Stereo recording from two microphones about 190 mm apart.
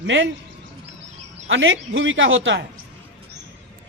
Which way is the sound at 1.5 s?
90° right.